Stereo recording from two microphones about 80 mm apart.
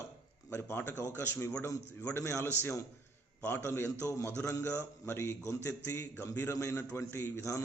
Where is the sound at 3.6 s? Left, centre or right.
Left.